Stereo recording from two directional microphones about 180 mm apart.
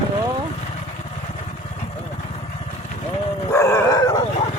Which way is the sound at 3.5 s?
20° left (ahead or behind).